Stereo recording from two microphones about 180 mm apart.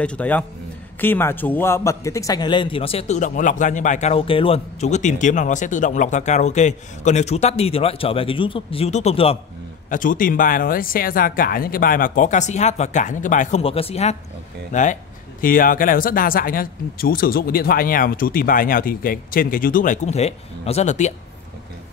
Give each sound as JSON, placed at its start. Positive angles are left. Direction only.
{"t": 0.0, "sound": "a man's voice", "side_deg": 5}
{"t": 9.8, "sound": "speech", "side_deg": 50}